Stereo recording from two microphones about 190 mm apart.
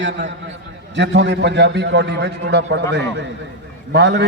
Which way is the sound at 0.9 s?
70° right (ahead or behind).